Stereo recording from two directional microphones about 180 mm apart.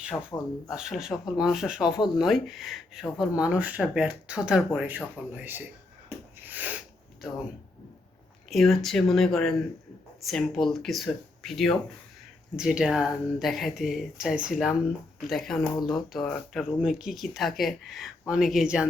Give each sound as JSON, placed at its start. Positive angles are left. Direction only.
{"t": 0.1, "sound": "speech", "side_deg": 10}
{"t": 0.7, "sound": "speech", "side_deg": -5}
{"t": 6.1, "sound": "a sound", "side_deg": -10}
{"t": 8.4, "sound": "speech", "side_deg": 0}
{"t": 15.8, "sound": "speech", "side_deg": 25}
{"t": 16.1, "sound": "speech", "side_deg": 5}